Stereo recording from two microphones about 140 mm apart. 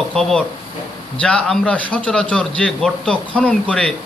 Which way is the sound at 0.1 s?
5° left (ahead or behind).